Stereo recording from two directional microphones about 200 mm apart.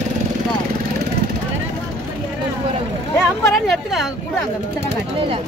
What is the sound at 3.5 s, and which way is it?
Speech, centre (ahead or behind).